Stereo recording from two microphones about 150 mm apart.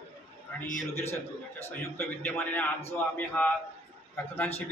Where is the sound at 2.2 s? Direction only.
10° left (ahead or behind).